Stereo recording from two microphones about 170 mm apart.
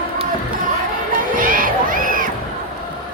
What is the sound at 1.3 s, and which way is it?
Music, 55° right (ahead or behind).